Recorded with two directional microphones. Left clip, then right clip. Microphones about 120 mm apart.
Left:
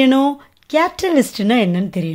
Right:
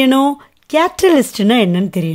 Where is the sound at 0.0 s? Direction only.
35° right (ahead or behind).